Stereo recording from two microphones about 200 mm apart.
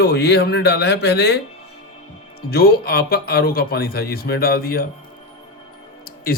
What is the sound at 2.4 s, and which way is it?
A man's voice, 50° left (ahead or behind).